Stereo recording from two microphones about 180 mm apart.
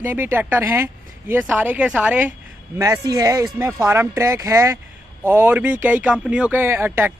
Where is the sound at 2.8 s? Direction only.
20° right (ahead or behind).